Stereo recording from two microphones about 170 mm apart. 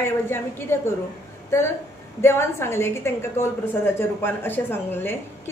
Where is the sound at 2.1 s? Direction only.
15° left (ahead or behind).